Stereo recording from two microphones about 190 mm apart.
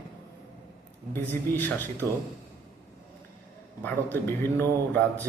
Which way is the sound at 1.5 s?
10° left (ahead or behind).